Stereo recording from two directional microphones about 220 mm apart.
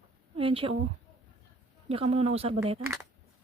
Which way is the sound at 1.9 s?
25° right (ahead or behind).